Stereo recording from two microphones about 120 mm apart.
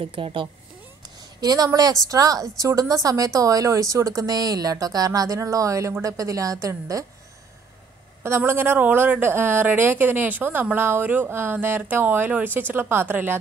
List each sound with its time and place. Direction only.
0.0 s a woman's voice: 50° right (ahead or behind)
1.4 s speech: 30° right (ahead or behind)
8.2 s speech: 20° right (ahead or behind)